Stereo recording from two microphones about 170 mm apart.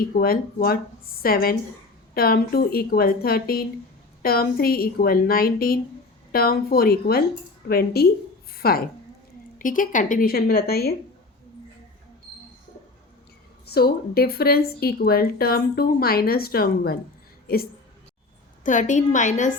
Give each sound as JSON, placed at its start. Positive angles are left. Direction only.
{"t": 0.1, "sound": "speech", "side_deg": 60}
{"t": 8.5, "sound": "a sound", "side_deg": 60}
{"t": 9.6, "sound": "speech", "side_deg": 50}
{"t": 13.7, "sound": "speech", "side_deg": 65}
{"t": 18.6, "sound": "a woman's voice", "side_deg": 50}